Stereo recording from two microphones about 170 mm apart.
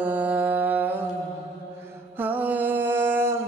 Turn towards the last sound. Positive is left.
turn(degrees=-15)  # may be behind; listen again after turning